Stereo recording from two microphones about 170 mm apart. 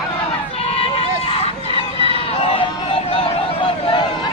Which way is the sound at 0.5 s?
35° left (ahead or behind).